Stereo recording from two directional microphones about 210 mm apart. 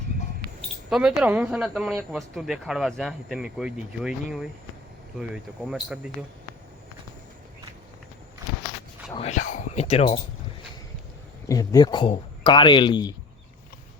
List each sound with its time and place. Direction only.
0.9 s speech: centre (ahead or behind)
9.1 s speech: 35° left (ahead or behind)
11.4 s speech: 15° left (ahead or behind)